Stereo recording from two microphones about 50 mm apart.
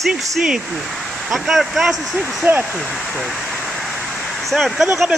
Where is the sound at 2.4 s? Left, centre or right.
Right.